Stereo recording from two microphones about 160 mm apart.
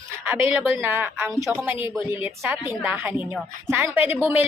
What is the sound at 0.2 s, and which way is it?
Speech, 15° right (ahead or behind).